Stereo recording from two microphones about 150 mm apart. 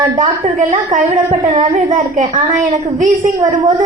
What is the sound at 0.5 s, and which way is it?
A woman's voice, 60° right (ahead or behind).